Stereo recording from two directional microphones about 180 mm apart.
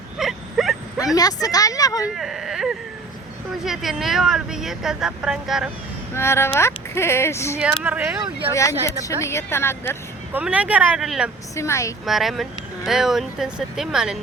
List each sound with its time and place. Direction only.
0.2 s a sound: centre (ahead or behind)
0.9 s speech: 20° left (ahead or behind)
2.1 s whimper: centre (ahead or behind)
3.6 s speech: centre (ahead or behind)
6.1 s speech: 15° left (ahead or behind)
7.8 s speech: 10° right (ahead or behind)
8.8 s speech: 15° left (ahead or behind)
10.3 s speech: 5° right (ahead or behind)
11.5 s speech: 15° left (ahead or behind)
12.0 s speech: centre (ahead or behind)